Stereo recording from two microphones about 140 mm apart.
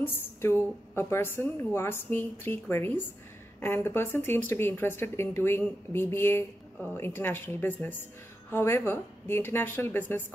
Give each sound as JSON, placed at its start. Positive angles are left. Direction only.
{"t": 0.0, "sound": "speech", "side_deg": 15}